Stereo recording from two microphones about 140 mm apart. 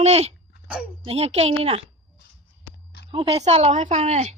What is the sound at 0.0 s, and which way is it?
A woman's voice, 50° right (ahead or behind).